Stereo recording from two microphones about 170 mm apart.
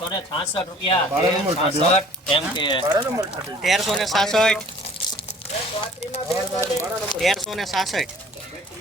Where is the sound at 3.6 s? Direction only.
Centre (ahead or behind).